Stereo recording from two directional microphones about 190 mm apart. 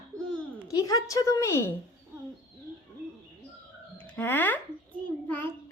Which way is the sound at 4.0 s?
10° left (ahead or behind).